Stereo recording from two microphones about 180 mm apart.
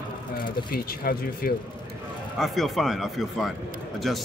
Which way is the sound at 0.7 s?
55° left (ahead or behind).